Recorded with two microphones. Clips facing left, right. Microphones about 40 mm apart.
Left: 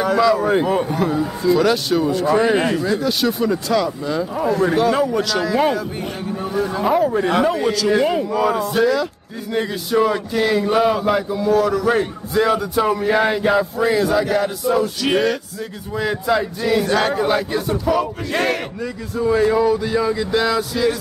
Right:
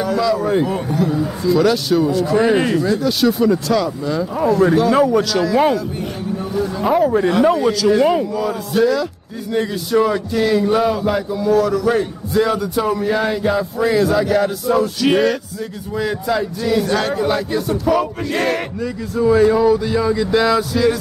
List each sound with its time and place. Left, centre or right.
0.0 s a man's voice: centre
4.5 s music: centre
6.8 s music: centre
8.3 s music: left
8.7 s music: centre
9.5 s a man's voice: centre
12.8 s a man's voice: centre
13.7 s music: centre
16.0 s a man's voice: centre
17.9 s music: centre